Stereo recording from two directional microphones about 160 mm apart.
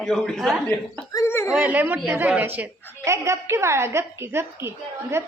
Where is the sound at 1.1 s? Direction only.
15° left (ahead or behind).